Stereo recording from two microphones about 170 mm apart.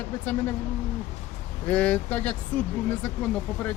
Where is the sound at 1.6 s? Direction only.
10° left (ahead or behind).